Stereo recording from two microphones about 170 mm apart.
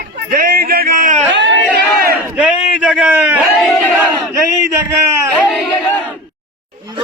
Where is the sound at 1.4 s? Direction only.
90° right.